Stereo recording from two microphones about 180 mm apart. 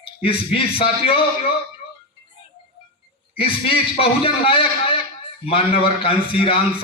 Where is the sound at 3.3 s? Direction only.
30° left (ahead or behind).